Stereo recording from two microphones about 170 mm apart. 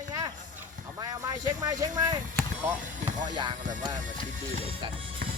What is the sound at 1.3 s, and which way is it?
Speech, 20° right (ahead or behind).